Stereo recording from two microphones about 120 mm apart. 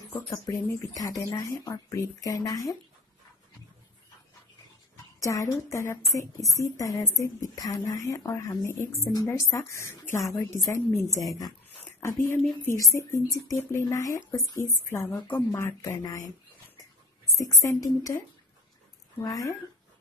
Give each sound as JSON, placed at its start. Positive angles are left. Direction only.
{"t": 0.1, "sound": "speech", "side_deg": 25}
{"t": 5.2, "sound": "speech", "side_deg": 25}
{"t": 17.6, "sound": "speech", "side_deg": 25}